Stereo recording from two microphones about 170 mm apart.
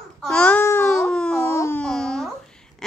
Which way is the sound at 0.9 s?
Centre (ahead or behind).